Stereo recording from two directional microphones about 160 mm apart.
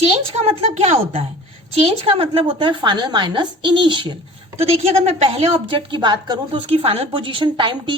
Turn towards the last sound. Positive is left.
turn(degrees=-30)  # may be behind; listen again after turning